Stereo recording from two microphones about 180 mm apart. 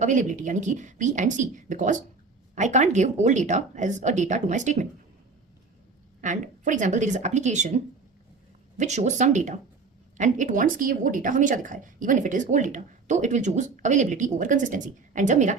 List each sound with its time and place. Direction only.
0.0 s a woman's voice: 45° right (ahead or behind)
6.2 s speech: 45° right (ahead or behind)
8.8 s a woman's voice: 40° right (ahead or behind)